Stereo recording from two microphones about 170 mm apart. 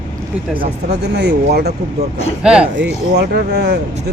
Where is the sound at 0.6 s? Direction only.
75° right (ahead or behind).